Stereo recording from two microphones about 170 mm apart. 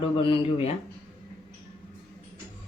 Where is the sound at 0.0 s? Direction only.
30° left (ahead or behind).